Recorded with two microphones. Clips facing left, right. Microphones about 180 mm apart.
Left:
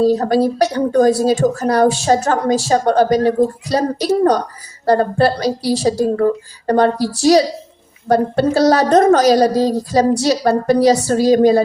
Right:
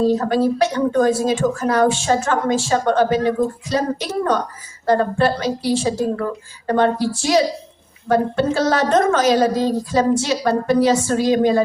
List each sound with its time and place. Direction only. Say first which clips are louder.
0.0 s speech: left 3 dB; 35° left (ahead or behind)